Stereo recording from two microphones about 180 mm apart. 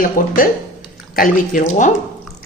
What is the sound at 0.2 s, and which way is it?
A woman's voice, 50° left (ahead or behind).